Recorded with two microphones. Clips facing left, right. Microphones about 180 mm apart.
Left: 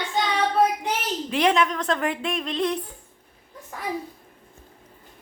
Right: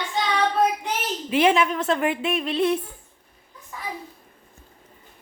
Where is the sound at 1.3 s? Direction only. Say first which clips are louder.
Right 2 dB; 5° right (ahead or behind).